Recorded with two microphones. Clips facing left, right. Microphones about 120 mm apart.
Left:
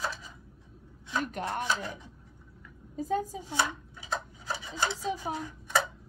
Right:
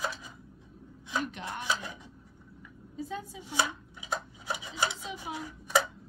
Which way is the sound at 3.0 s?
45° left (ahead or behind).